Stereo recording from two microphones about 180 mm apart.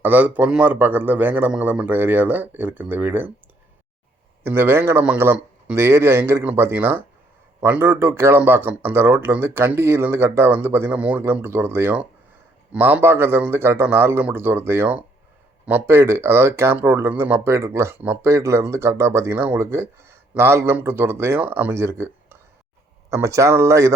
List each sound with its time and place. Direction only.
0.0 s speech: 10° right (ahead or behind)
4.4 s speech: 15° right (ahead or behind)